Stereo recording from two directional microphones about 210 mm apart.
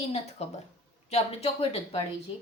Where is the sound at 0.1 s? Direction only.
30° left (ahead or behind).